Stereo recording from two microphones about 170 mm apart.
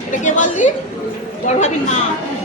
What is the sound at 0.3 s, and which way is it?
A woman's voice, 45° left (ahead or behind).